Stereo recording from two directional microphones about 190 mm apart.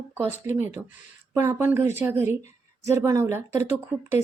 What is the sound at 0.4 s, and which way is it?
A woman's voice, 15° right (ahead or behind).